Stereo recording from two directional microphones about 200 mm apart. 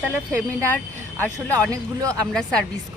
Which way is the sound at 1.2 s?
10° left (ahead or behind).